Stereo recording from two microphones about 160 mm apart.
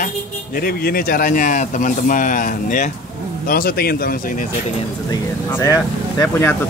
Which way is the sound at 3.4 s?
65° left (ahead or behind).